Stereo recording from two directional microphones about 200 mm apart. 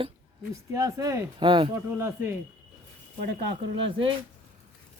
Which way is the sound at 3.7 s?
25° right (ahead or behind).